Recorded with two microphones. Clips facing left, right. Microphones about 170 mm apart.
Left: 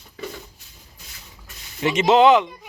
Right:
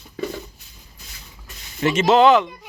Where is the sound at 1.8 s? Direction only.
15° left (ahead or behind).